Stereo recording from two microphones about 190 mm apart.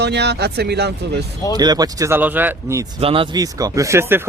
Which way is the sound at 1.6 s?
20° right (ahead or behind).